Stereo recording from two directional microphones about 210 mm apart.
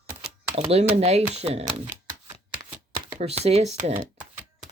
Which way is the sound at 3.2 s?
30° right (ahead or behind).